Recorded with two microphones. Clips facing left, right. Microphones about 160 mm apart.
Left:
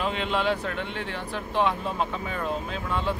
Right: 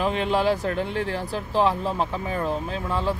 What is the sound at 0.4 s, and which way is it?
Speech, 40° right (ahead or behind).